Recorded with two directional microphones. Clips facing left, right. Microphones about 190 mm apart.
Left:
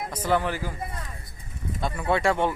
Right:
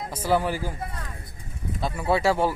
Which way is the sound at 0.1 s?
10° right (ahead or behind).